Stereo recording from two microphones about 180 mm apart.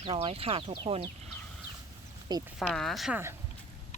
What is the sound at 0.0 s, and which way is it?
Speech, 30° right (ahead or behind).